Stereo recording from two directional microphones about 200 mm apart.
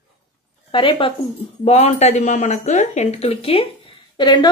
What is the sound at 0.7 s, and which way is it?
Speech, 25° left (ahead or behind).